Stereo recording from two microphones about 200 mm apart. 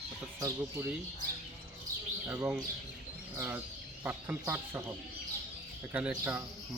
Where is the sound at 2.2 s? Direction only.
10° right (ahead or behind).